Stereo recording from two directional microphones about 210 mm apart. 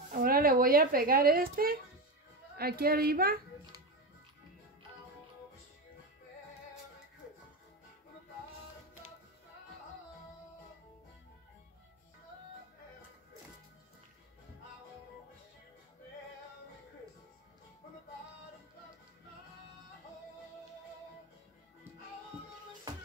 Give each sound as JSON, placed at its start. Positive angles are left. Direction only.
{"t": 0.1, "sound": "a woman's voice", "side_deg": -45}